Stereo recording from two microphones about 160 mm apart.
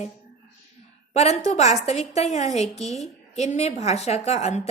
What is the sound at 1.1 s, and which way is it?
A woman's voice, 40° left (ahead or behind).